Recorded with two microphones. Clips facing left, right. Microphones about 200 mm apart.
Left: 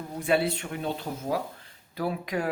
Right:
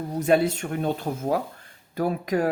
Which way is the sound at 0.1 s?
45° right (ahead or behind).